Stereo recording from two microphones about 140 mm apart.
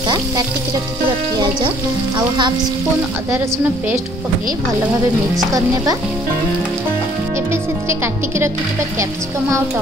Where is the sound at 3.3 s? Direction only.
5° right (ahead or behind).